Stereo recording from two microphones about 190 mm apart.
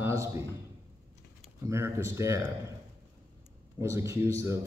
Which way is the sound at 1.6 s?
15° right (ahead or behind).